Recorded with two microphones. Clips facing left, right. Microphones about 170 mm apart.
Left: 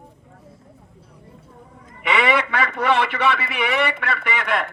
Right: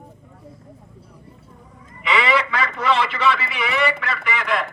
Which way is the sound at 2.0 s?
55° left (ahead or behind).